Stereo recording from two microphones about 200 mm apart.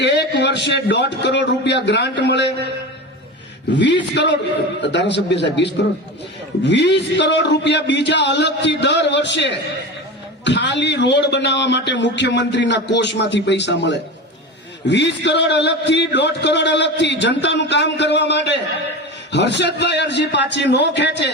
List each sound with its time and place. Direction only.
0.0 s a man's voice: 55° left (ahead or behind)
3.7 s a man's voice: 60° left (ahead or behind)